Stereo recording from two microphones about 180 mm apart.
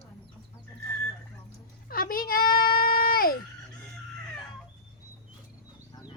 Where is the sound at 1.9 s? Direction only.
55° left (ahead or behind).